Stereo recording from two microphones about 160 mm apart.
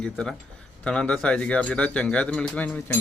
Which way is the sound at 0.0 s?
5° left (ahead or behind).